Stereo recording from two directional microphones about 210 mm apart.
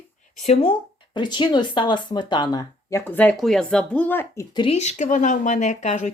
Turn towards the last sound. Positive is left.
turn(degrees=35)  # may be behind; listen again after turning